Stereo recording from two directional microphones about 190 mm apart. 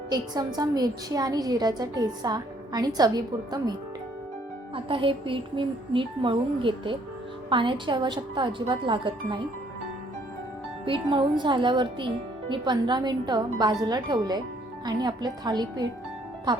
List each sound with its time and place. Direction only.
0.1 s a woman's voice: 20° right (ahead or behind)
10.8 s a woman's voice: 25° right (ahead or behind)